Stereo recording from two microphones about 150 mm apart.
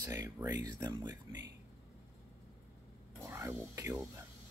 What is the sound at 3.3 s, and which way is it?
Speech, 15° right (ahead or behind).